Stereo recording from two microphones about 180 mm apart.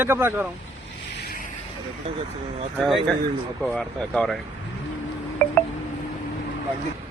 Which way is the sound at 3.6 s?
Centre (ahead or behind).